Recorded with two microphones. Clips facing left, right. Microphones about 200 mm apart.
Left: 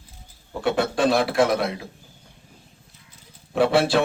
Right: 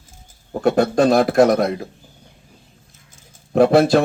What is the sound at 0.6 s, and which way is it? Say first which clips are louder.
Speech: right 6 dB; 40° right (ahead or behind).